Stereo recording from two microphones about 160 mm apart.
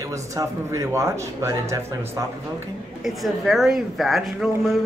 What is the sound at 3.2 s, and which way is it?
Speech, centre (ahead or behind).